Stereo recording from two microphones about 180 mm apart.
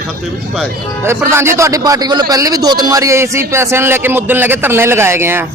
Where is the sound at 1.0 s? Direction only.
15° right (ahead or behind).